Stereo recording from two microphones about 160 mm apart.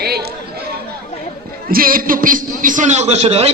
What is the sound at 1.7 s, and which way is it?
A man's voice, 65° right (ahead or behind).